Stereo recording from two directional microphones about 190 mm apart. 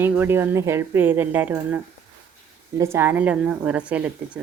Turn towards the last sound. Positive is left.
turn(degrees=-5)  # may be behind; listen again after turning